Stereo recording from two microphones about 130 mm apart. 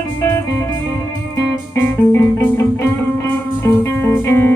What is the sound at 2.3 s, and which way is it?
Music, 20° left (ahead or behind).